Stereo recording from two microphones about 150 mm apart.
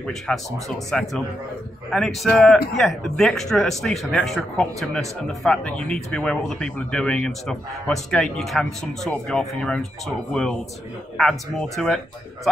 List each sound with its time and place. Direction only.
0.0 s a man's voice: centre (ahead or behind)